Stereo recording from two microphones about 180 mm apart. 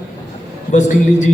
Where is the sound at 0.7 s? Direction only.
40° left (ahead or behind).